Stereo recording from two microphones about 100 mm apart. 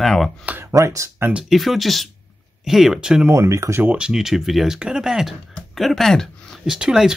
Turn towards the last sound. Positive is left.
turn(degrees=-5)  # may be behind; listen again after turning